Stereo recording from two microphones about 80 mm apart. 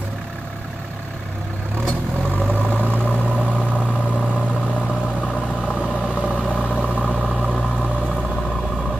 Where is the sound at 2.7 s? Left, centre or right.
Right.